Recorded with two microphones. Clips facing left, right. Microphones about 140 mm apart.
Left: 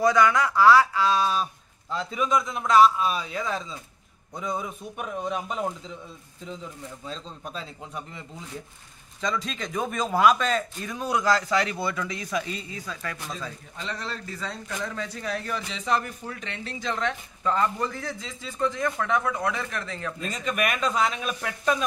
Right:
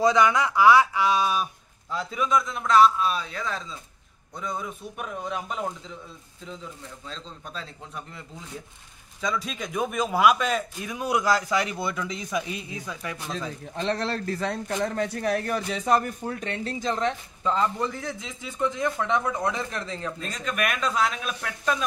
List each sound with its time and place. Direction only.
0.0 s speech: 20° right (ahead or behind); by 8.2 s 5° left (ahead or behind)
9.2 s a man's voice: 5° right (ahead or behind)
13.7 s speech: 70° right (ahead or behind); by 17.1 s 35° right (ahead or behind)
17.4 s speech: 20° right (ahead or behind)
20.2 s speech: 5° left (ahead or behind)